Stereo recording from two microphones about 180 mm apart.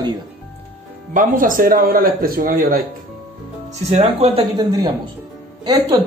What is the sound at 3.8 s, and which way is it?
Speech, 35° right (ahead or behind).